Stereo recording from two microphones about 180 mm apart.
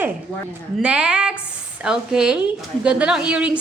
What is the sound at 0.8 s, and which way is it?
A woman's voice, 5° right (ahead or behind).